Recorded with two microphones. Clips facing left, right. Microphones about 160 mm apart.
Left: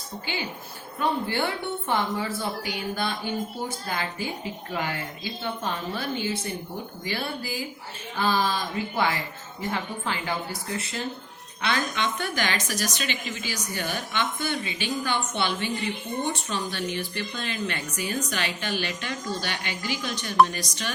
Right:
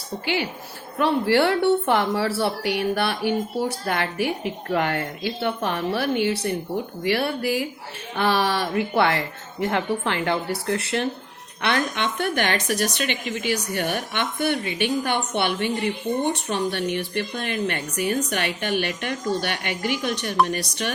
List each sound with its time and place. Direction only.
0.9 s a woman's voice: 80° right; by 20.9 s 60° right (ahead or behind)